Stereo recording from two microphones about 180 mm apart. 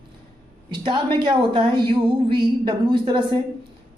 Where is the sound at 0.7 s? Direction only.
25° right (ahead or behind).